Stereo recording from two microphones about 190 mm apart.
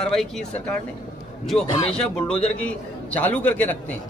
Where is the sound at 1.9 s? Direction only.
5° left (ahead or behind).